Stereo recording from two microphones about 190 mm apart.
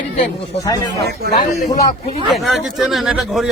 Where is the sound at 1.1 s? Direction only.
55° right (ahead or behind).